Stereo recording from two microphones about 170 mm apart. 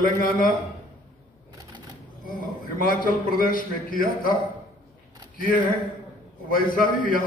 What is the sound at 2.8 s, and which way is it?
A man's voice, 55° left (ahead or behind).